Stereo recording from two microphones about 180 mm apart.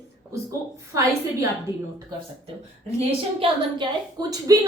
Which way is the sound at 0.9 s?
15° right (ahead or behind).